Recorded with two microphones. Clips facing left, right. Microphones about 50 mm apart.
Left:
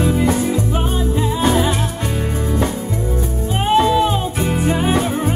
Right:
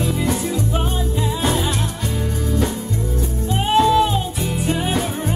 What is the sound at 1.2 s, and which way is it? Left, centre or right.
Music, left.